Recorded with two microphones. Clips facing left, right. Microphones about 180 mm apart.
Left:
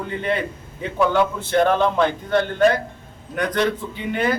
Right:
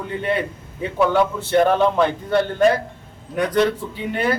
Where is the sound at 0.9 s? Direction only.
5° right (ahead or behind).